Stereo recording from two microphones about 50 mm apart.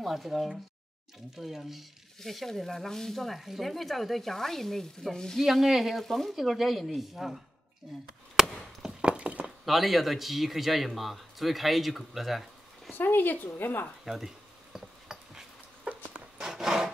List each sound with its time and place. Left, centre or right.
0.0 s speech: centre
5.4 s speech: centre
8.4 s chop: centre
9.0 s a sound: right
9.7 s speech: centre
12.9 s a woman's voice: left
14.0 s insect: centre
16.1 s rub: centre